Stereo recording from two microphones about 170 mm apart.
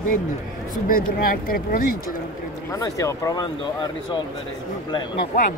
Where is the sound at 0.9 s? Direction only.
55° left (ahead or behind).